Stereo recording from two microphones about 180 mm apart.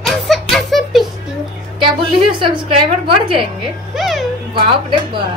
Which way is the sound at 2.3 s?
30° right (ahead or behind).